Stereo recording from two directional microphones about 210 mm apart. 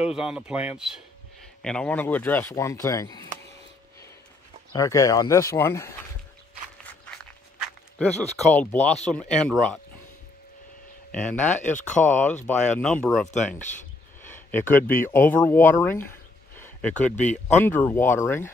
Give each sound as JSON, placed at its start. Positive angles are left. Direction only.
{"t": 0.0, "sound": "speech", "side_deg": -5}
{"t": 4.7, "sound": "speech", "side_deg": 15}
{"t": 8.3, "sound": "speech", "side_deg": 10}
{"t": 11.1, "sound": "speech", "side_deg": 5}
{"t": 11.8, "sound": "speech", "side_deg": 35}
{"t": 12.4, "sound": "speech", "side_deg": 5}